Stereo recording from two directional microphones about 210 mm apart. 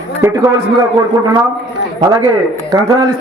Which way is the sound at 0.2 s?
15° right (ahead or behind).